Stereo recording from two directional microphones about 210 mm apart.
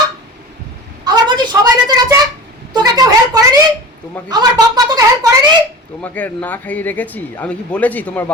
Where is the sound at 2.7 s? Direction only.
20° right (ahead or behind).